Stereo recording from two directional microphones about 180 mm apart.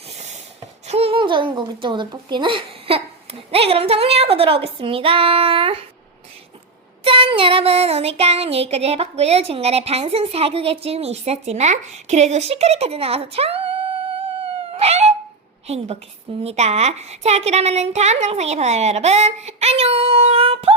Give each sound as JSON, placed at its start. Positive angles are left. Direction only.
{"t": 0.9, "sound": "speech", "side_deg": -35}
{"t": 3.5, "sound": "child singing", "side_deg": -35}
{"t": 7.0, "sound": "child singing", "side_deg": -30}
{"t": 14.2, "sound": "dog", "side_deg": -35}
{"t": 15.6, "sound": "child singing", "side_deg": -35}